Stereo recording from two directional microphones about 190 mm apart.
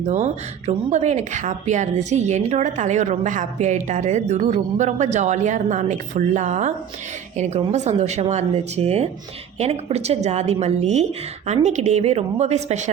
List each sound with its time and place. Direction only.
0.0 s speech: 40° right (ahead or behind)